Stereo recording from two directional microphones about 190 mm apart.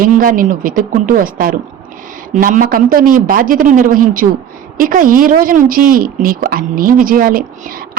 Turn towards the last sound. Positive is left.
turn(degrees=-50)  # may be behind; listen again after turning